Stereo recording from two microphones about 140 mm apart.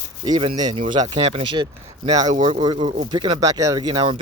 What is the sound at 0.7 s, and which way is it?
Speech, 40° right (ahead or behind).